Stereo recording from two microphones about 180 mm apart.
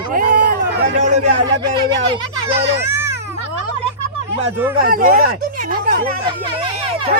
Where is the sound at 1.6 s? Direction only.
25° right (ahead or behind).